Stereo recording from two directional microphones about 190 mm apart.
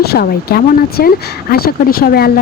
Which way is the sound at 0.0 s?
55° left (ahead or behind).